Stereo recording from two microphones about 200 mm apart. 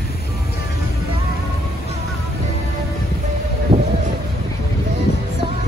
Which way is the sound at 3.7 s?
30° right (ahead or behind).